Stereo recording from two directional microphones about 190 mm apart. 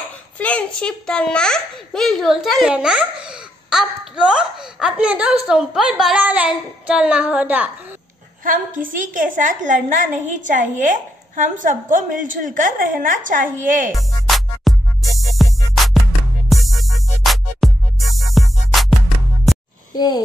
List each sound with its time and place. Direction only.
0.4 s a child's voice: 5° left (ahead or behind)
8.5 s a woman's voice: 45° right (ahead or behind)
13.9 s music: centre (ahead or behind)
20.0 s a sound: 20° left (ahead or behind)